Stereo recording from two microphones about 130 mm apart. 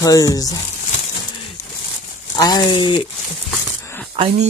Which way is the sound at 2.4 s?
35° left (ahead or behind).